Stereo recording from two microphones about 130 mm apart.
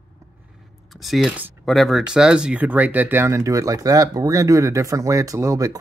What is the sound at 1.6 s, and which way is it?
Speech, centre (ahead or behind).